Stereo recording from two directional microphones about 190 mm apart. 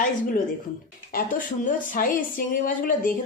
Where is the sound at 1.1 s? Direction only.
45° left (ahead or behind).